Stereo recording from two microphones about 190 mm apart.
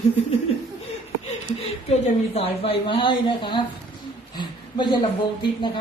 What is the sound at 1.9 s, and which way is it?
A woman's voice, 30° left (ahead or behind).